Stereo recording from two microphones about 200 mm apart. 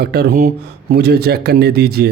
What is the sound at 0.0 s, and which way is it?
Speech, 50° right (ahead or behind).